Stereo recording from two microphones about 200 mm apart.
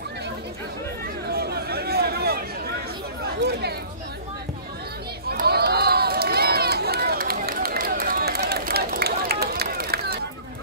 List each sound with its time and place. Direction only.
1.3 s a sound: 50° right (ahead or behind)
3.3 s chatter: 55° right (ahead or behind)
5.3 s run: 50° right (ahead or behind)